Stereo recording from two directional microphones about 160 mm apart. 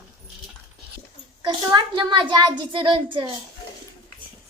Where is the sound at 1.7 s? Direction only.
30° right (ahead or behind).